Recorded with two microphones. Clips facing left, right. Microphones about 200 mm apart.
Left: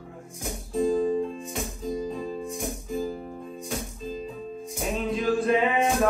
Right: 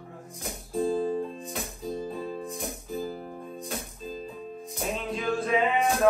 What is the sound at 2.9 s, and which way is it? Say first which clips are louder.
Music: left 3 dB; centre (ahead or behind).